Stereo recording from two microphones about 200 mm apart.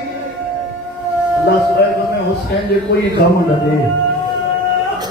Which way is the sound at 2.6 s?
55° left (ahead or behind).